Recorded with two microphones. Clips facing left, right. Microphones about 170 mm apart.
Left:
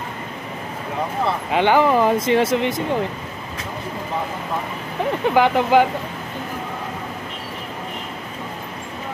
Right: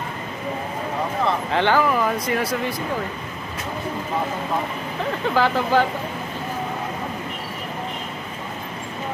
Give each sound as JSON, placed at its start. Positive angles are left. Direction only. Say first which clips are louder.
{"t": 1.5, "sound": "speech", "louder": "left 5 dB", "side_deg": 15}
{"t": 5.3, "sound": "speech", "louder": "left 4 dB", "side_deg": 15}